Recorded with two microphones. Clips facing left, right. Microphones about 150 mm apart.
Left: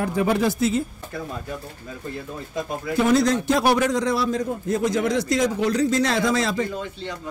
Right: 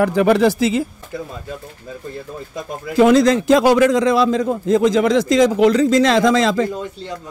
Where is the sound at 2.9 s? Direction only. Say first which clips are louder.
Right 7 dB; 90° right.